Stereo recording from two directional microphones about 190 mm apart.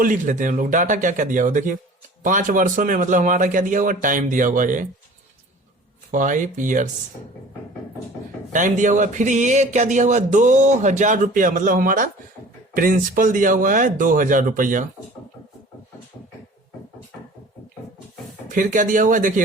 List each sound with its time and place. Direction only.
0.0 s a man's voice: 45° right (ahead or behind)
6.1 s a man's voice: 45° right (ahead or behind)
8.5 s a man's voice: 40° right (ahead or behind)
18.4 s a man's voice: 45° right (ahead or behind)